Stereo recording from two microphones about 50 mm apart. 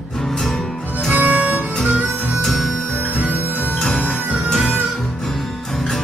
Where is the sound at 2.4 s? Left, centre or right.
Centre.